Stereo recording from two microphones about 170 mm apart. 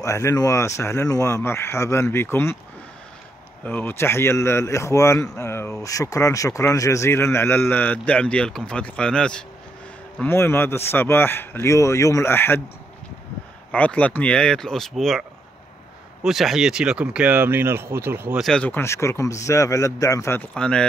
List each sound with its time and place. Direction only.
0.0 s a man's voice: 20° left (ahead or behind)
3.6 s a man's voice: 10° left (ahead or behind)
13.7 s speech: 10° left (ahead or behind); by 18.4 s 15° right (ahead or behind)
18.4 s a man's voice: 5° left (ahead or behind)